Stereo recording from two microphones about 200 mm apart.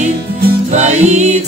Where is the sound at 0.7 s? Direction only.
35° right (ahead or behind).